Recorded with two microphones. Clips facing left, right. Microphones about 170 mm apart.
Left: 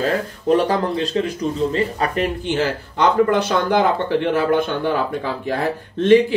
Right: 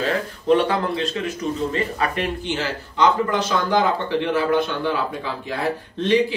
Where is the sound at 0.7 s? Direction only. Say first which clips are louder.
Left 2 dB; 35° left (ahead or behind).